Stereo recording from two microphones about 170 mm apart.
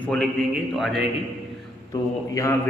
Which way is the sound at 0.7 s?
Centre (ahead or behind).